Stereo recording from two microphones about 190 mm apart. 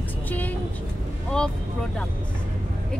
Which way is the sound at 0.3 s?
10° left (ahead or behind).